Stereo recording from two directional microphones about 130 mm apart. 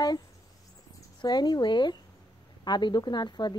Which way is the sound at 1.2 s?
35° left (ahead or behind).